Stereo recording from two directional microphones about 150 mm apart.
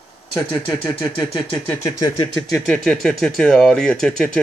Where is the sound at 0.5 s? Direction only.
35° left (ahead or behind).